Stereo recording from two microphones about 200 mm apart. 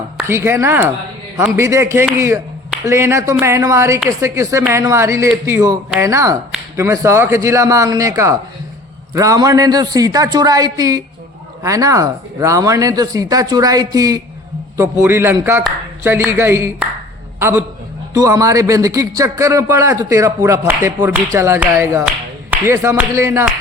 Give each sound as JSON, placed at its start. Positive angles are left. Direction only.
{"t": 0.3, "sound": "a man's voice", "side_deg": -15}